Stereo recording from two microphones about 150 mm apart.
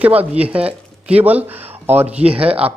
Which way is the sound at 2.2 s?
40° right (ahead or behind).